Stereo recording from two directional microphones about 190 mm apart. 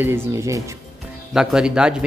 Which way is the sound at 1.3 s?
5° right (ahead or behind).